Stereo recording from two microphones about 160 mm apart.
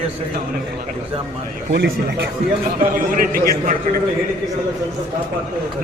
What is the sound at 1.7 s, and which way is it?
Speech, 80° right.